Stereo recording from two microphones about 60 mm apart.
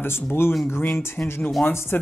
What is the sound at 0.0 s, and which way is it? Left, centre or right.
Speech, left.